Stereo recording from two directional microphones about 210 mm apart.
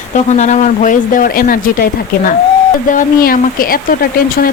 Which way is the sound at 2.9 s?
40° left (ahead or behind).